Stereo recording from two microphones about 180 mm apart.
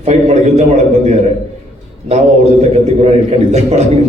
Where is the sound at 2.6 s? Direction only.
40° right (ahead or behind).